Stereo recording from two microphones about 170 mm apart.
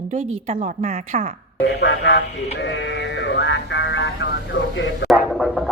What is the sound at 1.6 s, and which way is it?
Speech, 85° left.